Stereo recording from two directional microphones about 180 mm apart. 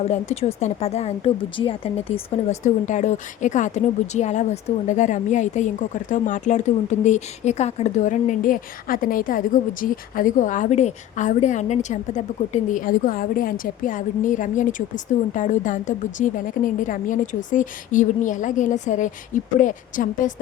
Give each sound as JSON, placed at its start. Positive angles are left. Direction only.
{"t": 0.0, "sound": "speech", "side_deg": 35}